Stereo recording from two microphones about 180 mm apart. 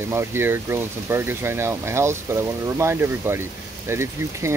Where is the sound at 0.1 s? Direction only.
15° right (ahead or behind).